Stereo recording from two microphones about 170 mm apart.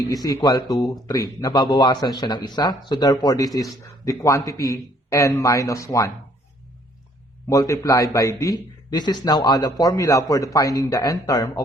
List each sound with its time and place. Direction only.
0.1 s speech: 20° left (ahead or behind)
7.5 s speech: 20° left (ahead or behind)